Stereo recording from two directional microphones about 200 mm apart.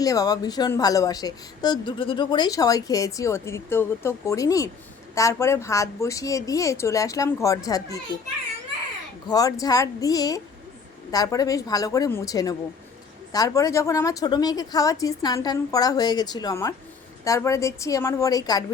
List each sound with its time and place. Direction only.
0.0 s speech: 20° left (ahead or behind)
9.2 s speech: 20° left (ahead or behind)